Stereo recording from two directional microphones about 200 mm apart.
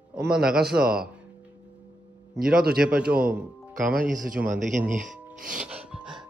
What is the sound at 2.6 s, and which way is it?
Speech, 50° right (ahead or behind).